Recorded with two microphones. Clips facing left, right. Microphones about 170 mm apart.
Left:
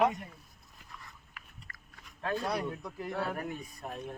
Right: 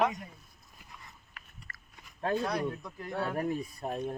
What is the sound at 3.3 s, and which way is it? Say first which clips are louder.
Speech: right 6 dB; 30° right (ahead or behind).